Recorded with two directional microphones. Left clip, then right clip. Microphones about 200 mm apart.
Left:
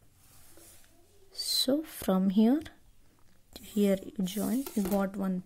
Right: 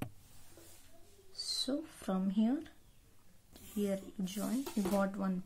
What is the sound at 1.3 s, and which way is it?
Speech, 45° left (ahead or behind).